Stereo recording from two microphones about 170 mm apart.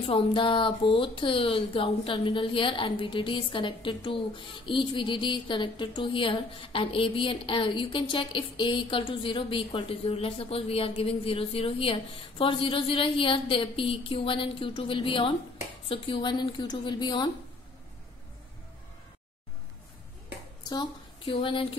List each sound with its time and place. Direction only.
0.0 s a woman's voice: 30° left (ahead or behind)
20.6 s a woman's voice: 25° left (ahead or behind)